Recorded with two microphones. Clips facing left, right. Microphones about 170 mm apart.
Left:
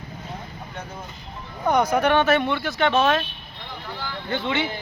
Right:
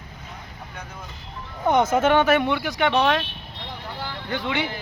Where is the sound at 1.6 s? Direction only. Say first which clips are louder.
Right 1 dB; 25° right (ahead or behind).